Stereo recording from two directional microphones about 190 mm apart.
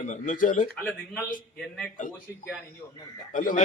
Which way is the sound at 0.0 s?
40° left (ahead or behind).